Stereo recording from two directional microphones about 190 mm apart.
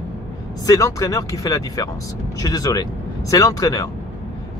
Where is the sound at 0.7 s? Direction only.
15° left (ahead or behind).